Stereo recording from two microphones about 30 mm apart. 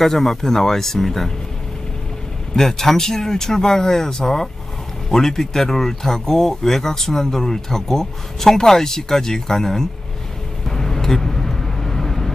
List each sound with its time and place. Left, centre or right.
0.0 s speech: centre
2.5 s speech: centre
10.7 s vehicle: centre